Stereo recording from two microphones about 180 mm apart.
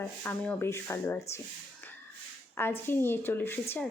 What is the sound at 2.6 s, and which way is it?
Speech, 10° left (ahead or behind).